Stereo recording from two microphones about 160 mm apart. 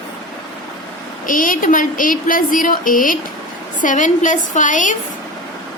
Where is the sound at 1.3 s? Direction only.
60° left (ahead or behind).